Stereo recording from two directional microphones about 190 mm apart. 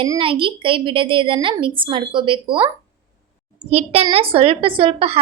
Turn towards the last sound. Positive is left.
turn(degrees=-30)  # may be behind; listen again after turning